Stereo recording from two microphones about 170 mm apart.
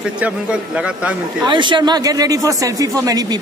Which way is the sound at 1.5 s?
25° right (ahead or behind).